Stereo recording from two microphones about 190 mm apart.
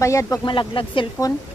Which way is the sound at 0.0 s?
15° left (ahead or behind).